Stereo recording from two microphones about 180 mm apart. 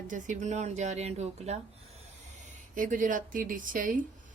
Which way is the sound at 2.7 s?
45° right (ahead or behind).